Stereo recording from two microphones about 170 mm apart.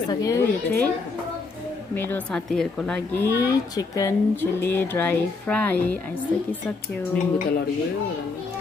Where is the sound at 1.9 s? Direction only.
10° left (ahead or behind).